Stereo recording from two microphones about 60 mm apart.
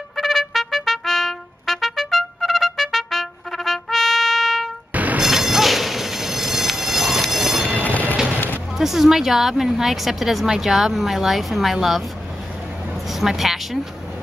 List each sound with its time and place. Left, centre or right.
0.1 s trumpet: centre
4.9 s music: right
5.2 s train: centre
7.8 s music: left
8.7 s a woman's voice: centre
13.1 s speech: centre